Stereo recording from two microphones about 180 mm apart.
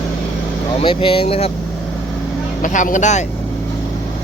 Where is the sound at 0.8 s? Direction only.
30° left (ahead or behind).